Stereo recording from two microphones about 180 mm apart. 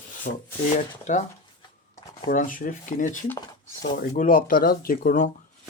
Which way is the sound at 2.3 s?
50° left (ahead or behind).